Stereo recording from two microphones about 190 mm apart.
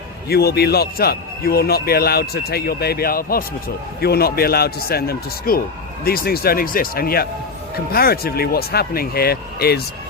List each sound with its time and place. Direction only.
0.3 s a man's voice: 55° left (ahead or behind)